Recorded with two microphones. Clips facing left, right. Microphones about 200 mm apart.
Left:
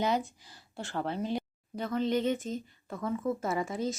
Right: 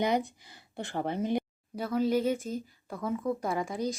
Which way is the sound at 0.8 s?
15° right (ahead or behind).